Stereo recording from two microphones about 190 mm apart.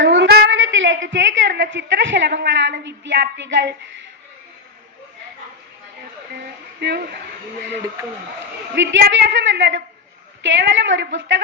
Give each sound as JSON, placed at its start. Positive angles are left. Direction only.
{"t": 0.0, "sound": "a sound", "side_deg": -70}
{"t": 6.7, "sound": "a woman's voice", "side_deg": -60}
{"t": 8.7, "sound": "a woman's voice", "side_deg": -70}